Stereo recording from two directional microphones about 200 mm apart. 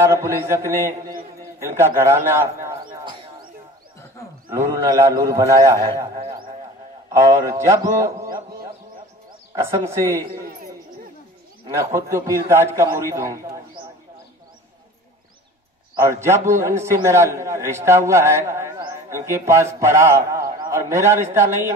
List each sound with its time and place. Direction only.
0.0 s a man's voice: 15° right (ahead or behind)
1.4 s a sound: 15° right (ahead or behind)
4.5 s a man's voice: 15° right (ahead or behind)
9.6 s a man's voice: 15° right (ahead or behind)
11.8 s a man's voice: 15° right (ahead or behind)
15.9 s a man's voice: 15° right (ahead or behind)